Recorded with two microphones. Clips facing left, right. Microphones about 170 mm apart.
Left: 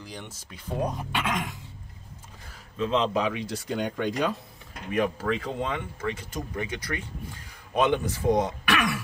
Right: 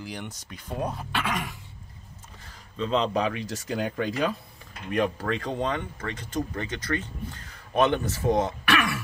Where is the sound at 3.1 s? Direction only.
Centre (ahead or behind).